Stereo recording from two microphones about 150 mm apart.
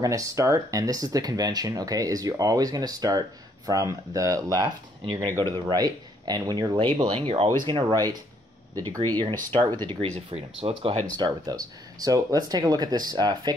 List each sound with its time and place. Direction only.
0.0 s speech: 20° right (ahead or behind)
9.8 s speech: 45° right (ahead or behind)
11.1 s speech: 25° right (ahead or behind)